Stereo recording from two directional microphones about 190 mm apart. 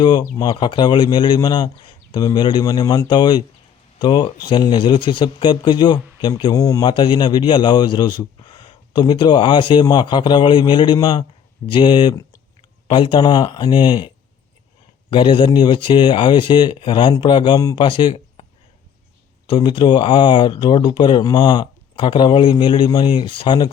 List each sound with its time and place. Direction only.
0.0 s speech: 25° left (ahead or behind)
15.1 s speech: 25° left (ahead or behind)
19.5 s speech: 25° left (ahead or behind)